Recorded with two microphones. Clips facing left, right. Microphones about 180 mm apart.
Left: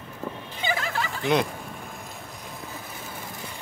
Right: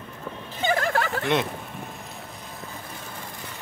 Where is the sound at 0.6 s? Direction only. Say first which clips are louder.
Right 5 dB; 50° right (ahead or behind).